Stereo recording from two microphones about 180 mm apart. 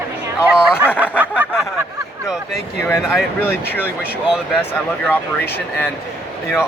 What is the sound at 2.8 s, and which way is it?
Speech, 15° left (ahead or behind).